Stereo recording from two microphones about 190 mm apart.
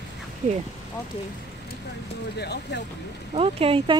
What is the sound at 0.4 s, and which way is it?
Speech, 40° right (ahead or behind).